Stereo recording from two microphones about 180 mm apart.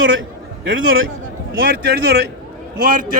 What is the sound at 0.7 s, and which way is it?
Speech, 90° right.